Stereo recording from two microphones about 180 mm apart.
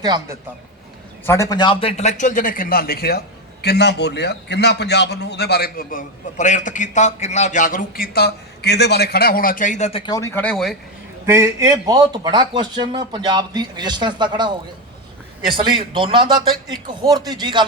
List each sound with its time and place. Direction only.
0.0 s a man's voice: 20° right (ahead or behind)
1.3 s a man's voice: 20° left (ahead or behind); by 10.0 s 40° left (ahead or behind)
10.1 s speech: 15° left (ahead or behind)
11.3 s a man's voice: 15° right (ahead or behind)
15.5 s a man's voice: 30° right (ahead or behind)